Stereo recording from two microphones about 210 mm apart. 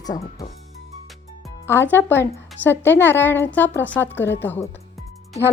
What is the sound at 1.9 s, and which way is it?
A woman's voice, 10° left (ahead or behind).